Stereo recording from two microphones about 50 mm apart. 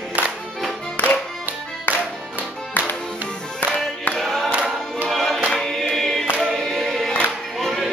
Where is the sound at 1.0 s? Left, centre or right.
Left.